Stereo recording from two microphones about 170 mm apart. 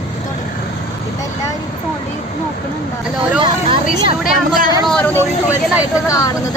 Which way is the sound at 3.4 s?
30° right (ahead or behind).